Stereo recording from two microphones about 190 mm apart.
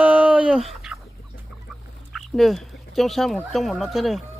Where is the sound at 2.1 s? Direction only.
Centre (ahead or behind).